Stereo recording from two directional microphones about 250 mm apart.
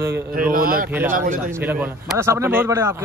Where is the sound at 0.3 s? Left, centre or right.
Right.